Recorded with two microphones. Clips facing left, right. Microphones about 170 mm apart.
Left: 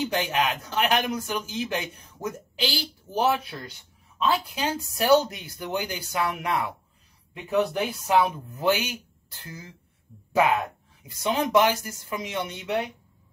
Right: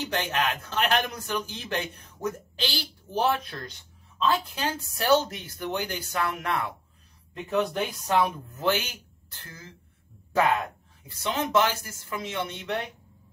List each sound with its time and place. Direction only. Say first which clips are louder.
0.0 s speech: left 3 dB; 10° left (ahead or behind)
11.1 s speech: left 3 dB; 15° left (ahead or behind)